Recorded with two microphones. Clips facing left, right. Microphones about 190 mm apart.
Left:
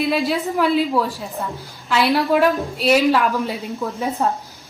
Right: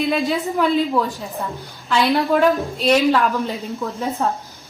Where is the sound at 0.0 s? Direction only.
5° left (ahead or behind).